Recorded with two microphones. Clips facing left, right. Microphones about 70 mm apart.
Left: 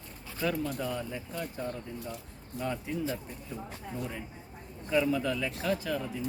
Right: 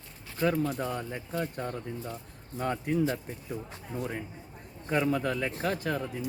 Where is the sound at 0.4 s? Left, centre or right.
Right.